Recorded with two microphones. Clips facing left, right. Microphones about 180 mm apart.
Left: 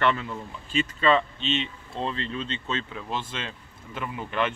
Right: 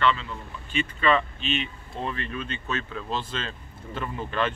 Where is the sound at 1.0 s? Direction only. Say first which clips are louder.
Left 1 dB; 30° left (ahead or behind).